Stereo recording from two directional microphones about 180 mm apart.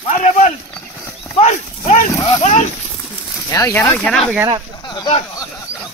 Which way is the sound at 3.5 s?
15° left (ahead or behind).